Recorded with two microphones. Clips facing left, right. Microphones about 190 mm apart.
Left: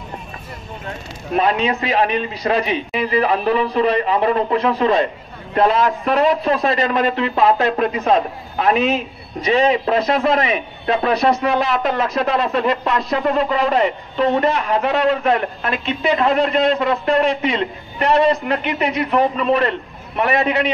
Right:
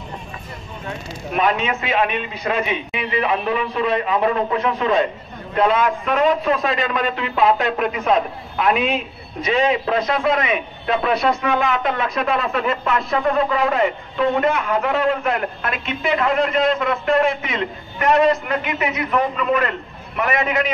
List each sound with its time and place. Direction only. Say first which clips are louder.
1.3 s a man's voice: left 3 dB; 35° left (ahead or behind)